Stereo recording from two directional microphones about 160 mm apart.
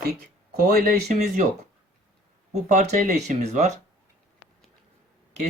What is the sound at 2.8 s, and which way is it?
Speech, 45° right (ahead or behind).